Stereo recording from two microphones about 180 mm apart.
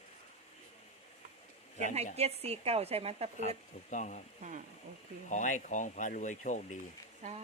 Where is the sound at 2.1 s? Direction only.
35° right (ahead or behind).